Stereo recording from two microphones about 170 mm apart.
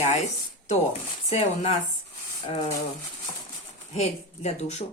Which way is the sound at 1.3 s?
40° left (ahead or behind).